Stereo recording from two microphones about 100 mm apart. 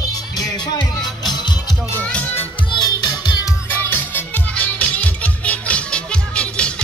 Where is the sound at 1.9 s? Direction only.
10° left (ahead or behind).